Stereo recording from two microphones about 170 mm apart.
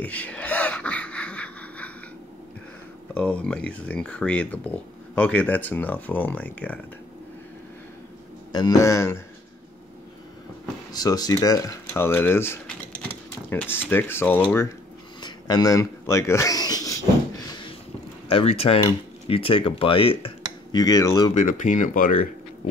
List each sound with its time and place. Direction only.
0.0 s a sound: 10° left (ahead or behind)
3.2 s speech: 5° left (ahead or behind)
8.5 s a man's voice: 25° left (ahead or behind)
10.9 s speech: 20° left (ahead or behind)
15.2 s speech: 25° left (ahead or behind)
18.3 s speech: 35° left (ahead or behind)
20.8 s a man's voice: 20° left (ahead or behind)
21.4 s speech: 50° left (ahead or behind)